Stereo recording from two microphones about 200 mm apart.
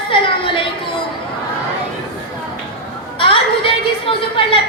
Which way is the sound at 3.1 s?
25° left (ahead or behind).